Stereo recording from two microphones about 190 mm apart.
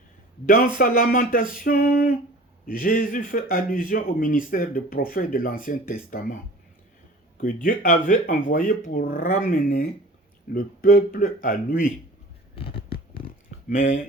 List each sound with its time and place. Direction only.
0.4 s speech: 50° left (ahead or behind)
7.4 s speech: 45° left (ahead or behind)
12.5 s a sound: 30° left (ahead or behind)